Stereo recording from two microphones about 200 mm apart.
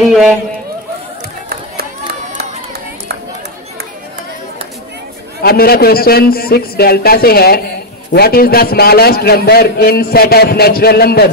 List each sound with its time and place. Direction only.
0.1 s a man's voice: 5° right (ahead or behind)
5.4 s a man's voice: 50° left (ahead or behind)